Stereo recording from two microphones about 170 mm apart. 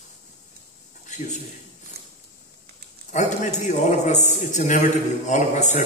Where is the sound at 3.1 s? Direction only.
45° left (ahead or behind).